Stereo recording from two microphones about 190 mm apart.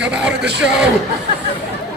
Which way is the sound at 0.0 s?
5° right (ahead or behind).